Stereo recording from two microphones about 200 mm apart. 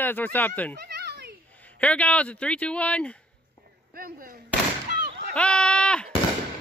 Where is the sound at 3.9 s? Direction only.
45° right (ahead or behind).